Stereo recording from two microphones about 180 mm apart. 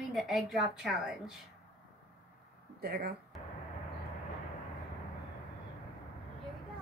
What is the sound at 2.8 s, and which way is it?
Speech, 60° right (ahead or behind).